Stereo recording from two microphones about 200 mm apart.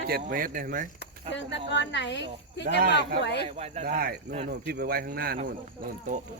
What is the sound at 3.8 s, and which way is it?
Speech, 50° right (ahead or behind).